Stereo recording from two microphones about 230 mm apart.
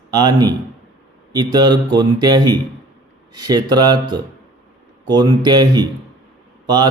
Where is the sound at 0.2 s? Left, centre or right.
Centre.